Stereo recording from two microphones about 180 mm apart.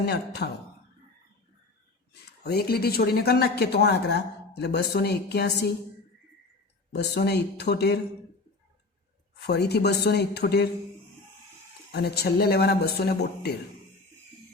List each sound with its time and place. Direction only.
0.0 s speech: 65° left (ahead or behind)
2.4 s speech: 60° left (ahead or behind)
6.9 s speech: 65° left (ahead or behind)
9.5 s speech: 65° left (ahead or behind)
11.9 s speech: 65° left (ahead or behind)